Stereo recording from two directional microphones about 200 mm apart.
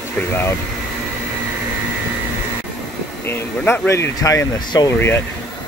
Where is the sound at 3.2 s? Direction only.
10° left (ahead or behind).